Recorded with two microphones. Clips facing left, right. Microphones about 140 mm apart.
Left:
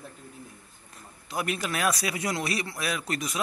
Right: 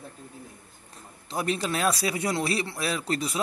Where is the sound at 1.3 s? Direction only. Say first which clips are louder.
Right 3 dB; 30° right (ahead or behind).